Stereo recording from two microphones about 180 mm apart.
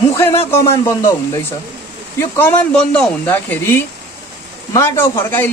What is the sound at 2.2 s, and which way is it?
A man's voice, 10° left (ahead or behind).